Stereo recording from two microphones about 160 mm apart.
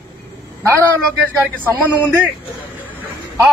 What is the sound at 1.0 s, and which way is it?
Speech, 10° left (ahead or behind).